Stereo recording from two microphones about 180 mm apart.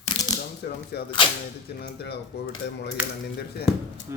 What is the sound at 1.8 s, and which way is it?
Speech, 65° left (ahead or behind).